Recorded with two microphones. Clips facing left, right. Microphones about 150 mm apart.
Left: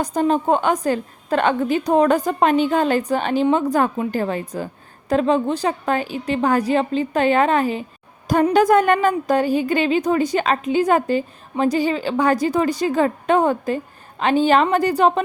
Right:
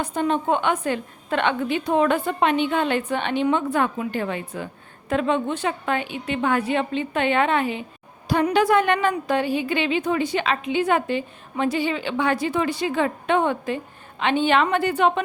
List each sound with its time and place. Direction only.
0.0 s a woman's voice: 40° left (ahead or behind)